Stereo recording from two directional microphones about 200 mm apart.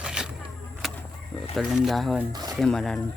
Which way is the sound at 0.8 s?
Centre (ahead or behind).